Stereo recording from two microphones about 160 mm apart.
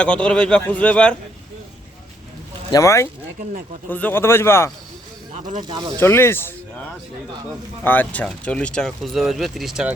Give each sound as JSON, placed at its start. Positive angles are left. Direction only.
{"t": 0.0, "sound": "speech", "side_deg": 5}
{"t": 2.7, "sound": "speech", "side_deg": 20}
{"t": 5.5, "sound": "speech", "side_deg": -30}
{"t": 6.0, "sound": "speech", "side_deg": 15}
{"t": 7.9, "sound": "speech", "side_deg": 10}